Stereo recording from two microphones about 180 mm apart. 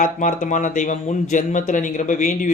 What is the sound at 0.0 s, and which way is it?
Speech, 45° left (ahead or behind).